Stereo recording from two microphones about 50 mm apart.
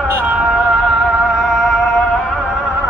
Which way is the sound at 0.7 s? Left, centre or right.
Centre.